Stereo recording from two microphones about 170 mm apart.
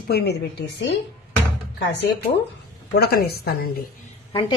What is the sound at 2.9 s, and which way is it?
Speech, 65° left (ahead or behind).